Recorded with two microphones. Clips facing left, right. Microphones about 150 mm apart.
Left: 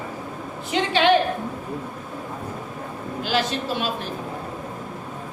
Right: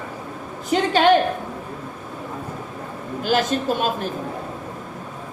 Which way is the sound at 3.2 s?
45° right (ahead or behind).